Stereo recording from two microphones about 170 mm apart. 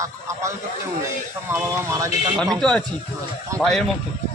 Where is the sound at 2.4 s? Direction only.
5° left (ahead or behind).